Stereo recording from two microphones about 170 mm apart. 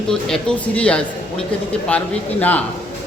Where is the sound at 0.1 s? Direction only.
5° left (ahead or behind).